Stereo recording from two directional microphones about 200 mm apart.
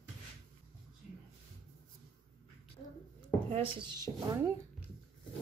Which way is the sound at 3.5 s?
20° right (ahead or behind).